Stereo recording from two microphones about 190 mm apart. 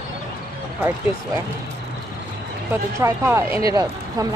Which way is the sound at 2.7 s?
15° right (ahead or behind).